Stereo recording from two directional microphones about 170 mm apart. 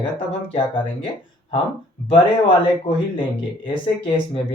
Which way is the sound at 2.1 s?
30° left (ahead or behind).